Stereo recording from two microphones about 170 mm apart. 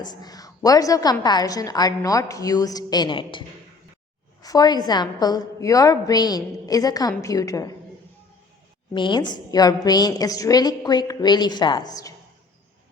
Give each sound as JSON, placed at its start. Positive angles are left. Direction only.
{"t": 0.0, "sound": "a woman's voice", "side_deg": 25}
{"t": 4.4, "sound": "a woman's voice", "side_deg": 25}
{"t": 8.9, "sound": "a woman's voice", "side_deg": 25}